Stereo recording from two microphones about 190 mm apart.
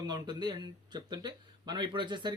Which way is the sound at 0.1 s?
20° right (ahead or behind).